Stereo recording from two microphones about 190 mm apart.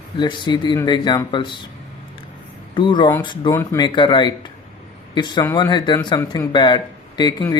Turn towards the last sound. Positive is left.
turn(degrees=20)  # may be behind; listen again after turning